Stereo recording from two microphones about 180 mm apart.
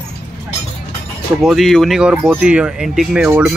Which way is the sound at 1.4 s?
Centre (ahead or behind).